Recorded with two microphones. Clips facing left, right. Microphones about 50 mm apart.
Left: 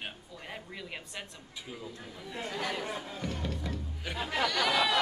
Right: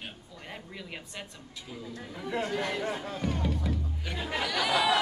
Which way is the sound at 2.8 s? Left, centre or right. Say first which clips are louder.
Right 4 dB; right.